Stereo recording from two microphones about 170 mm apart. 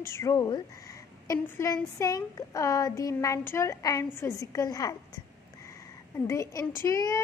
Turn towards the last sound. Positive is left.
turn(degrees=20)  # may be behind; listen again after turning